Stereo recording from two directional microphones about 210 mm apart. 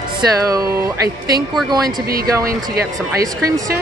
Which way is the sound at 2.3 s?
15° right (ahead or behind).